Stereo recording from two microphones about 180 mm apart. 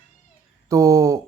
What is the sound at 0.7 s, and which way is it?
Speech, 15° right (ahead or behind).